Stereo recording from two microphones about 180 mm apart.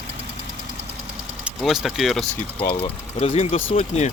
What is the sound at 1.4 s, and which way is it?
Speech, centre (ahead or behind).